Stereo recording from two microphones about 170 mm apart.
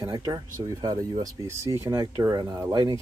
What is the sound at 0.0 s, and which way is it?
Speech, 25° right (ahead or behind).